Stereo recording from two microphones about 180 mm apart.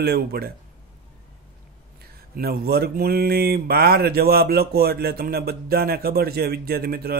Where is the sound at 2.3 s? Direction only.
60° right (ahead or behind).